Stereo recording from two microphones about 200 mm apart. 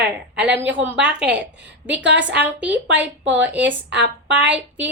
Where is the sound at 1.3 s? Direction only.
60° right (ahead or behind).